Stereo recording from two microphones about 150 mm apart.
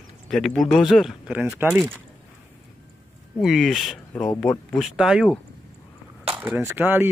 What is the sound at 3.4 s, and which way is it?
Speech, centre (ahead or behind).